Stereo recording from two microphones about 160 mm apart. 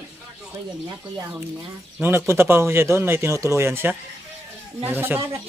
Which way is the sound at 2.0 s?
15° right (ahead or behind).